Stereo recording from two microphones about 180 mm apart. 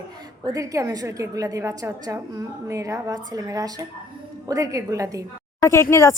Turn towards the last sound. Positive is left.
turn(degrees=15)  # may be behind; listen again after turning